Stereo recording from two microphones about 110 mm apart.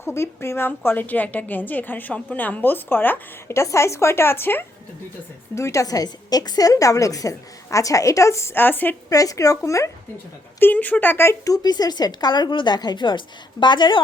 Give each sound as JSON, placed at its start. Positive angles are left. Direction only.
{"t": 0.0, "sound": "a woman's voice", "side_deg": 20}
{"t": 9.0, "sound": "a woman's voice", "side_deg": 30}
{"t": 10.6, "sound": "a woman's voice", "side_deg": 15}